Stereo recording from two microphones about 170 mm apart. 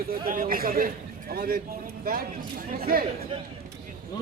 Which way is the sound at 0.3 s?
55° right (ahead or behind).